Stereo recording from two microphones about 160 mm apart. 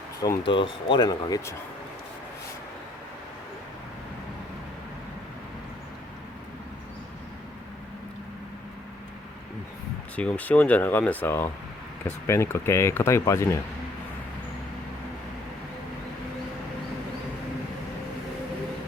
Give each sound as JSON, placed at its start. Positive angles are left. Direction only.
{"t": 0.2, "sound": "speech", "side_deg": 25}
{"t": 10.2, "sound": "speech", "side_deg": 10}